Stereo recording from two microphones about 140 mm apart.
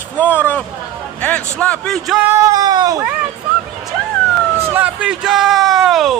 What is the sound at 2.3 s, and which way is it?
Speech, 25° right (ahead or behind).